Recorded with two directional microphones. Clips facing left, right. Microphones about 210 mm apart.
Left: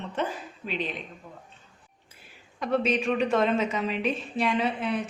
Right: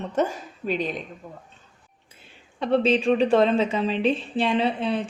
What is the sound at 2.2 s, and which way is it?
A woman's voice, 30° right (ahead or behind).